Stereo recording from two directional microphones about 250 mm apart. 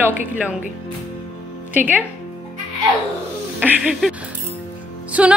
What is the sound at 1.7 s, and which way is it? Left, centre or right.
Speech, centre.